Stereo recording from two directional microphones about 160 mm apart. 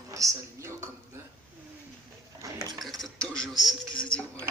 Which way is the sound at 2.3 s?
25° right (ahead or behind).